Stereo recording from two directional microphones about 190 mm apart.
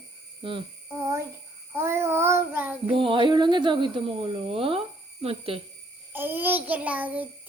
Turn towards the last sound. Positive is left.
turn(degrees=-10)  # may be behind; listen again after turning